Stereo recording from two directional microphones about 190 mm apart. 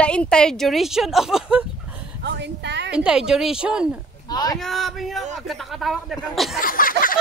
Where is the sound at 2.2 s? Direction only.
65° right (ahead or behind).